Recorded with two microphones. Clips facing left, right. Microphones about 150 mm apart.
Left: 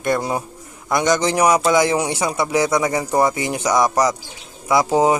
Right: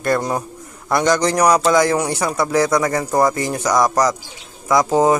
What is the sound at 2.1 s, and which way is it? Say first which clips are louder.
Speech: right 1 dB; 25° left (ahead or behind).